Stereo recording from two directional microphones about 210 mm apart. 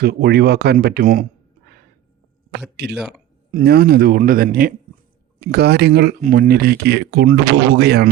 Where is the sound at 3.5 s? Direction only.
50° right (ahead or behind).